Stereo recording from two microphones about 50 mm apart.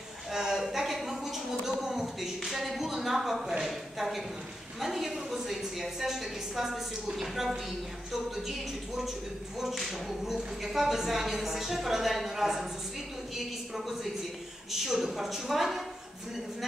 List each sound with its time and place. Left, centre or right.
0.3 s a sound: centre
4.7 s a woman's voice: centre
13.7 s a woman's voice: centre